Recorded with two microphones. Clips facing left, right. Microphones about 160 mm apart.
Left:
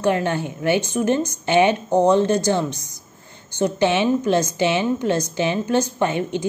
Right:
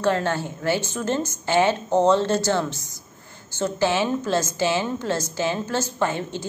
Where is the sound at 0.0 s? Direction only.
15° left (ahead or behind).